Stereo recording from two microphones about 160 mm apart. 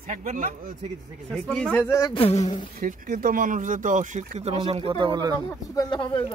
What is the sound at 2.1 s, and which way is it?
Speech, 40° left (ahead or behind).